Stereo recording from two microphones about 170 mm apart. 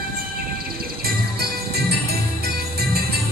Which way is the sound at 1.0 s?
65° right (ahead or behind).